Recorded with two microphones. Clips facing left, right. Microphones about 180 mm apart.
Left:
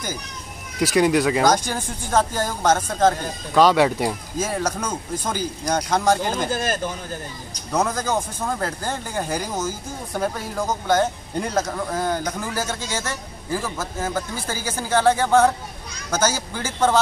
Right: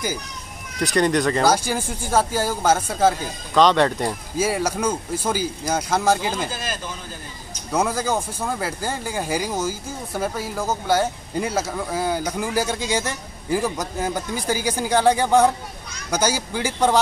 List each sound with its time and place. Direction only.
0.9 s speech: 5° left (ahead or behind)
1.4 s speech: 5° right (ahead or behind)
3.5 s speech: 5° left (ahead or behind)
4.4 s speech: 10° right (ahead or behind)
6.5 s speech: 50° left (ahead or behind)
7.7 s speech: 10° right (ahead or behind)